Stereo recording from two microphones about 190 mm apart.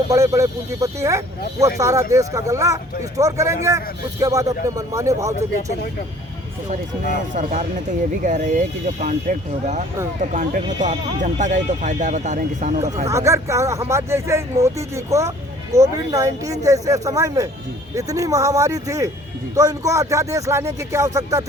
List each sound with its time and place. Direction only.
0.1 s speech: 15° right (ahead or behind)
7.3 s speech: 40° right (ahead or behind)
13.1 s speech: 15° right (ahead or behind)